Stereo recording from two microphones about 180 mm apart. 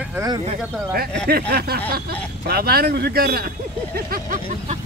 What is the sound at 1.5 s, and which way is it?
Speech, 60° right (ahead or behind).